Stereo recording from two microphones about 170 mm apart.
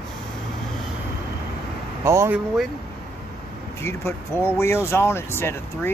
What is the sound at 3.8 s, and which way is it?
Speech, 15° left (ahead or behind).